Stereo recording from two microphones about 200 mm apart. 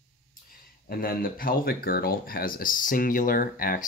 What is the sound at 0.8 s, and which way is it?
Speech, 50° left (ahead or behind).